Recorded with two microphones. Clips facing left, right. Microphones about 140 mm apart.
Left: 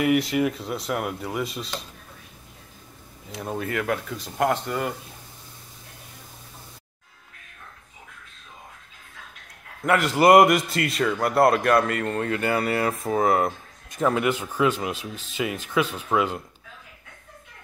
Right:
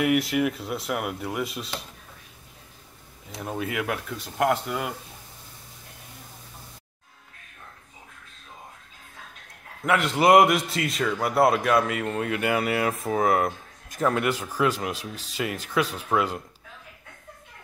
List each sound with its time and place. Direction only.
0.0 s a man's voice: centre (ahead or behind)
3.4 s a man's voice: 5° right (ahead or behind)
9.8 s a man's voice: centre (ahead or behind)